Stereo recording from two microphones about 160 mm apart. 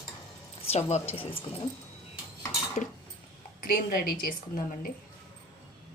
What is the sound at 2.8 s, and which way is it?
Speech, 50° left (ahead or behind).